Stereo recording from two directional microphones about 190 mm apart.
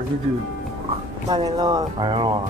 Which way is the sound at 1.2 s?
20° right (ahead or behind).